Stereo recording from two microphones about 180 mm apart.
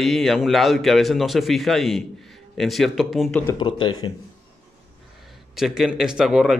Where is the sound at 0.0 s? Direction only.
Centre (ahead or behind).